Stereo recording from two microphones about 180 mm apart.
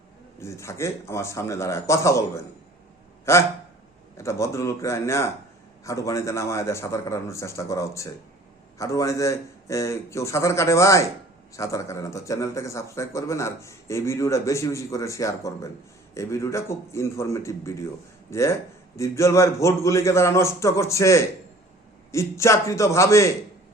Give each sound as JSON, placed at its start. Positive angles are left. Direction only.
{"t": 0.3, "sound": "a man's voice", "side_deg": 15}